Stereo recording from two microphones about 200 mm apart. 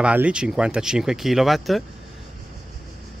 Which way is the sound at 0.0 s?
5° right (ahead or behind).